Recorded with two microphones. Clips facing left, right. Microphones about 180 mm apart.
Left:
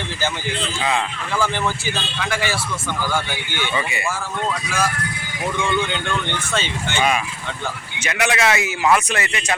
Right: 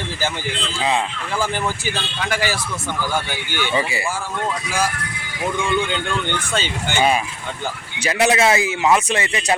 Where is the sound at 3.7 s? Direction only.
30° right (ahead or behind).